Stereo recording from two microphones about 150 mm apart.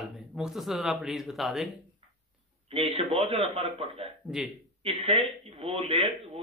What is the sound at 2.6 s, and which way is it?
Speech, 40° right (ahead or behind).